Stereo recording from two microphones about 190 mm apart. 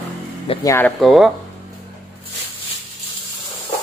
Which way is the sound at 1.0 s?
Centre (ahead or behind).